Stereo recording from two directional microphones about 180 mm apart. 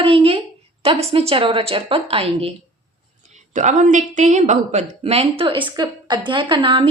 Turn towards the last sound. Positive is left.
turn(degrees=-30)  # may be behind; listen again after turning